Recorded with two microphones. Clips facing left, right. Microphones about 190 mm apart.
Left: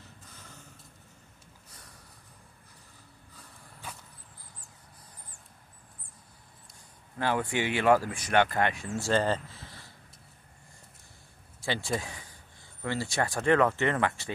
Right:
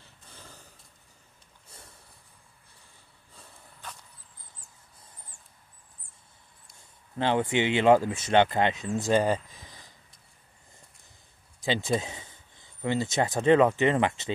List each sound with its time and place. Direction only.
0.0 s snort: 30° right (ahead or behind)
3.8 s vehicle: 10° left (ahead or behind)
7.2 s speech: 25° right (ahead or behind)
11.6 s speech: 20° right (ahead or behind)